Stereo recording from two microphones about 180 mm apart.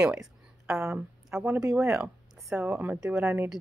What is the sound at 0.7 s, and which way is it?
Speech, 15° right (ahead or behind).